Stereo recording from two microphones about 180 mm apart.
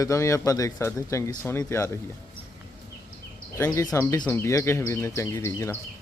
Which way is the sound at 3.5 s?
15° left (ahead or behind).